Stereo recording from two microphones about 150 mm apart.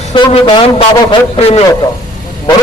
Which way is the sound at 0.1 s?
30° left (ahead or behind).